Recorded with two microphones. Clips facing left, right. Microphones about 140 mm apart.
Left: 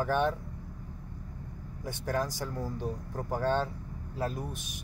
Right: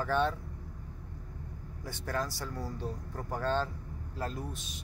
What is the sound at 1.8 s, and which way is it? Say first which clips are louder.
Speech: left 3 dB; 15° left (ahead or behind).